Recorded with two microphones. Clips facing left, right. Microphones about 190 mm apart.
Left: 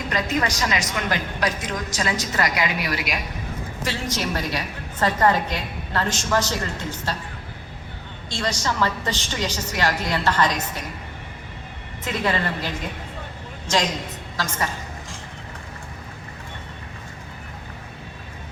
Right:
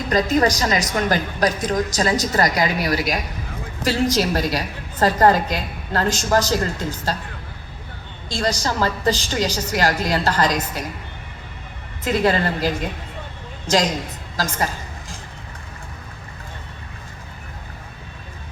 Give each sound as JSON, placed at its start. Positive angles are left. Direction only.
{"t": 0.1, "sound": "a woman's voice", "side_deg": -35}
{"t": 8.3, "sound": "a woman's voice", "side_deg": -35}
{"t": 12.0, "sound": "a woman's voice", "side_deg": -35}